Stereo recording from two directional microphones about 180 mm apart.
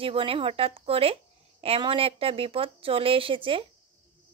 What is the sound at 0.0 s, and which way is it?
Speech, 30° right (ahead or behind).